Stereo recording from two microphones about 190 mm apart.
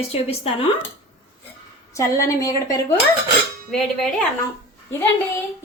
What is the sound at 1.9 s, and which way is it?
Speech, 15° left (ahead or behind).